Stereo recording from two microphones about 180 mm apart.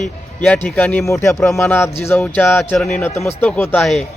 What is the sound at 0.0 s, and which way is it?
Speech, 5° left (ahead or behind).